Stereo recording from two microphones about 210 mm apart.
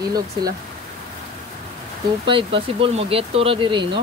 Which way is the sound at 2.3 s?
25° right (ahead or behind).